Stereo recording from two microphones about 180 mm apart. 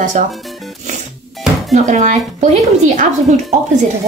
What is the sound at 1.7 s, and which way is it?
A woman's voice, 40° right (ahead or behind).